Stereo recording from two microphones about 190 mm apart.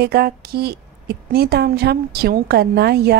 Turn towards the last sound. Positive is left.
turn(degrees=-60)  # may be behind; listen again after turning